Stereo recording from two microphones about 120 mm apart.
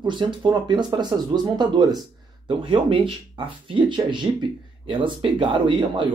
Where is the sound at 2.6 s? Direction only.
45° right (ahead or behind).